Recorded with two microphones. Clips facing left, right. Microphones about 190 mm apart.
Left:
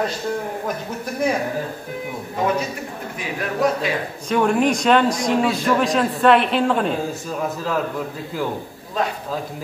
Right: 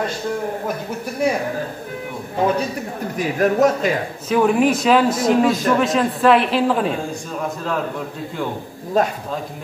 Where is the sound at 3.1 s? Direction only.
45° right (ahead or behind).